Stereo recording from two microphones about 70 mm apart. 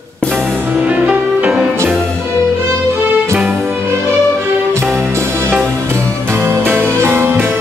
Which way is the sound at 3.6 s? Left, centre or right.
Right.